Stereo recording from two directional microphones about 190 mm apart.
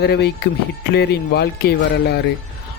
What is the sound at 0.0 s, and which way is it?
A man's voice, 60° left (ahead or behind).